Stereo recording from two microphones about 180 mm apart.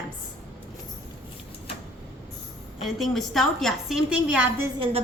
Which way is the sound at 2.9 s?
Centre (ahead or behind).